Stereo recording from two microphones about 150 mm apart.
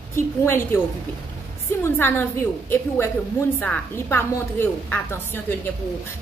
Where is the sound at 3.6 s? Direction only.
15° left (ahead or behind).